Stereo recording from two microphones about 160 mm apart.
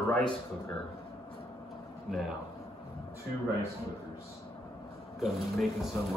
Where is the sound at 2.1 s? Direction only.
Centre (ahead or behind).